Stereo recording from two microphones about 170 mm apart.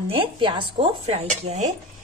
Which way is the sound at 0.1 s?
30° right (ahead or behind).